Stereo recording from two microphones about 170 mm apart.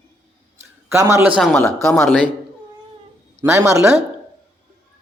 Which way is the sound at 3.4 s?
15° right (ahead or behind).